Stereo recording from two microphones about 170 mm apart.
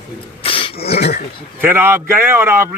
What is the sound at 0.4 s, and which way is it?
Beatboxing, 35° left (ahead or behind).